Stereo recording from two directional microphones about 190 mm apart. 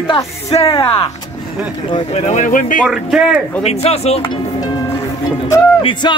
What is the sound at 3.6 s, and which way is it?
Speech, 35° left (ahead or behind).